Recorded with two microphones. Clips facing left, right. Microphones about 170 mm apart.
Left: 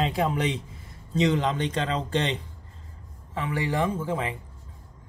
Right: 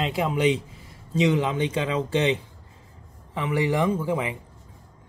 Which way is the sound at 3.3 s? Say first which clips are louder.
Right 3 dB; 20° right (ahead or behind).